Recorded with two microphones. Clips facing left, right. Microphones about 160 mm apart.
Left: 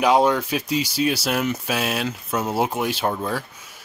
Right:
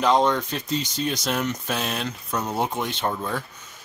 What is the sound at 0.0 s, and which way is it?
Speech, 10° left (ahead or behind).